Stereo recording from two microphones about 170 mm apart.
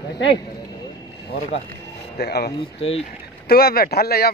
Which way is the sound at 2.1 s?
70° left (ahead or behind).